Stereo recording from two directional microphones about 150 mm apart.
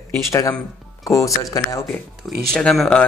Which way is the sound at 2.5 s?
5° left (ahead or behind).